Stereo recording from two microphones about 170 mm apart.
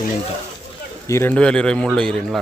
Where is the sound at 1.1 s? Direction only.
10° left (ahead or behind).